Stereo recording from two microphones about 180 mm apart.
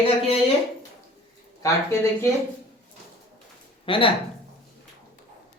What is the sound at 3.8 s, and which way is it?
Speech, 30° left (ahead or behind).